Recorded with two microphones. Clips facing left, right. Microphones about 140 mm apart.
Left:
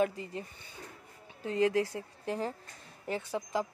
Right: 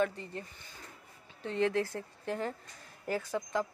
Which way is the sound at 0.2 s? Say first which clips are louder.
Left 2 dB; 5° left (ahead or behind).